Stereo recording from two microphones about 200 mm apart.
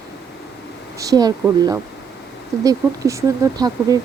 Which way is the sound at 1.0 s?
20° right (ahead or behind).